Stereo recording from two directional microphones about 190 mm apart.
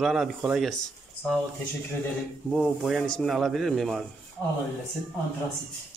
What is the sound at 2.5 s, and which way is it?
Speech, centre (ahead or behind).